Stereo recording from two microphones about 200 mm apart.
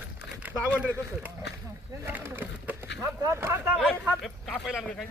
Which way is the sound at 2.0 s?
10° right (ahead or behind).